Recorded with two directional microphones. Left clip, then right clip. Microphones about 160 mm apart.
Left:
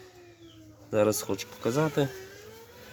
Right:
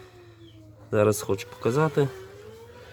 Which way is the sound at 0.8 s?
50° right (ahead or behind).